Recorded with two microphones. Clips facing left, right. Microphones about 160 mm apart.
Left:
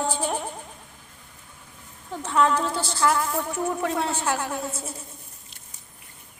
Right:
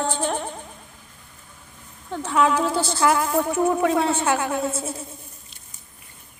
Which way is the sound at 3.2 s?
65° right (ahead or behind).